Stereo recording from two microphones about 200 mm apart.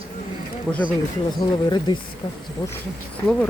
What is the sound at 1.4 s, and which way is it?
Speech, 20° left (ahead or behind).